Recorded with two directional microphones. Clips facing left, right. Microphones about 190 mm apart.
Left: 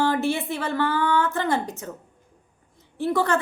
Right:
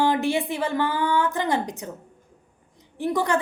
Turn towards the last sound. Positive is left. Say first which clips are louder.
# left 1 dB
turn(degrees=-15)  # may be behind; listen again after turning